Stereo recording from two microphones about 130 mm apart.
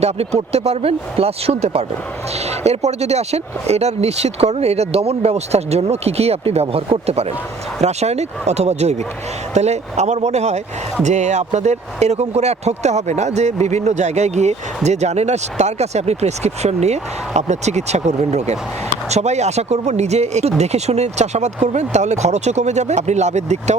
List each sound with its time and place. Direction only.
0.0 s speech: 55° right (ahead or behind)